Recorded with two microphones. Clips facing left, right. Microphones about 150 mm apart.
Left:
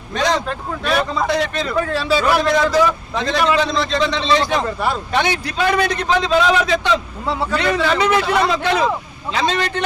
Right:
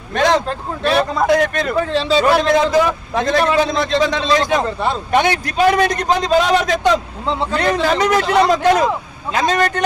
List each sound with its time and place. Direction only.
0.1 s a man's voice: 55° right (ahead or behind)
1.9 s a man's voice: 25° right (ahead or behind)
2.8 s a man's voice: 50° right (ahead or behind)